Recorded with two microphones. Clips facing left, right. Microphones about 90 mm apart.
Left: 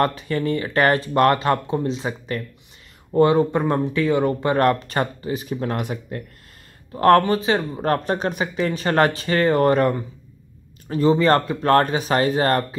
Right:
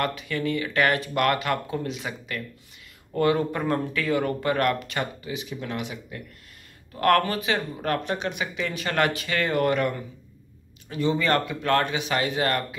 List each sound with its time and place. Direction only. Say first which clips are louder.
0.0 s speech: left 6 dB; 35° left (ahead or behind)
6.9 s speech: left 6 dB; 30° left (ahead or behind)